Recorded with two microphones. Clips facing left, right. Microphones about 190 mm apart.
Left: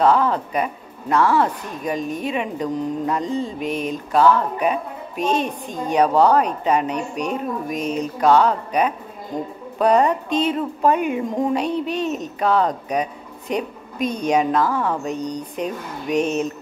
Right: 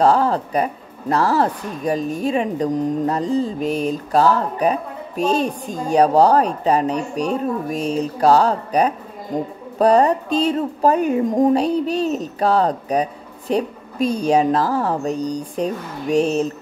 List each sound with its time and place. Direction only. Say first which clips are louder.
0.0 s speech: right 1 dB; 40° right (ahead or behind)